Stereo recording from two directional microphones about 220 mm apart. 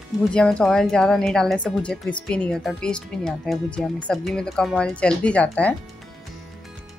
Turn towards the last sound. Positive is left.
turn(degrees=5)  # may be behind; listen again after turning